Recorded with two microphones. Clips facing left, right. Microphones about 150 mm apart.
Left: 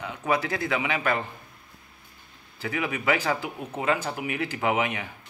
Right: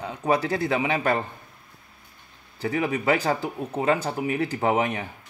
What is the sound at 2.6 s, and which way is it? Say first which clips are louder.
Speech: right 4 dB; 35° right (ahead or behind).